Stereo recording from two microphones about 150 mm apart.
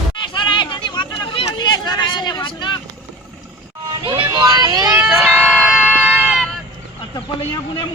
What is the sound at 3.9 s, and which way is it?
Vehicle, 30° right (ahead or behind).